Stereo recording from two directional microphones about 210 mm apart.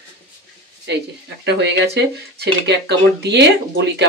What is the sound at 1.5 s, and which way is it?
Speech, 55° right (ahead or behind).